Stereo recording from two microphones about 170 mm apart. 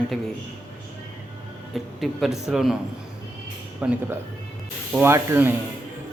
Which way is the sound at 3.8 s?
10° right (ahead or behind).